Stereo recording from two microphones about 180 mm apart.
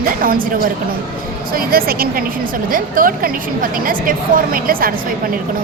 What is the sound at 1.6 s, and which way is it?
A woman's voice, 55° right (ahead or behind).